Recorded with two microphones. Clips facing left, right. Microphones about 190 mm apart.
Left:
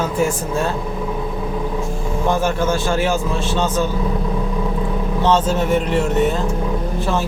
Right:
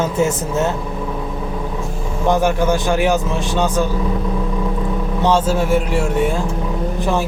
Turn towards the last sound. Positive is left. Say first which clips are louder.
# right 2 dB
turn(degrees=-15)  # may be behind; listen again after turning